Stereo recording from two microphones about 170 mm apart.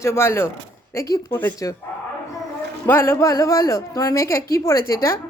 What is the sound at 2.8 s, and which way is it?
A woman's voice, 15° left (ahead or behind).